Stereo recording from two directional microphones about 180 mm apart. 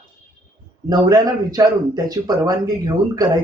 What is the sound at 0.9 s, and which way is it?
Speech, 20° right (ahead or behind).